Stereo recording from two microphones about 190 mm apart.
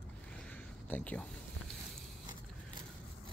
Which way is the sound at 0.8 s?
10° left (ahead or behind).